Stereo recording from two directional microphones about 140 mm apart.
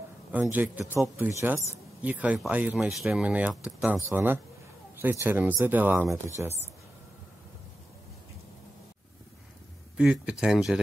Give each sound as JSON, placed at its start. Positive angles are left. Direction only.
{"t": 0.3, "sound": "speech", "side_deg": -15}
{"t": 9.9, "sound": "speech", "side_deg": -5}